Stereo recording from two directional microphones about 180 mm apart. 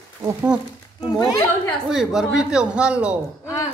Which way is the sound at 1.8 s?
5° right (ahead or behind).